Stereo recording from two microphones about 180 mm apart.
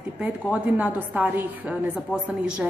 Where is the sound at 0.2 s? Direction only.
5° right (ahead or behind).